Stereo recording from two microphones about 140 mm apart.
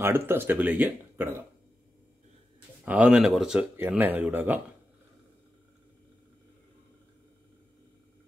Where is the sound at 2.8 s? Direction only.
10° right (ahead or behind).